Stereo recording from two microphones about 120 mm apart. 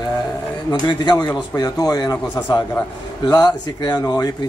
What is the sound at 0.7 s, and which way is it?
A man's voice, 35° left (ahead or behind).